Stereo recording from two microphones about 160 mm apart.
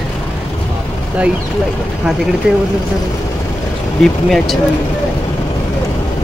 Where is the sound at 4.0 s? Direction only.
Centre (ahead or behind).